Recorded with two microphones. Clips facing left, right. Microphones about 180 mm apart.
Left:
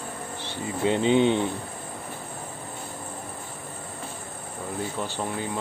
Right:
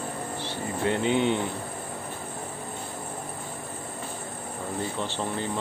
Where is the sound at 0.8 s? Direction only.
20° left (ahead or behind).